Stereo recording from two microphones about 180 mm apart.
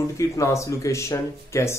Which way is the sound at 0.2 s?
15° left (ahead or behind).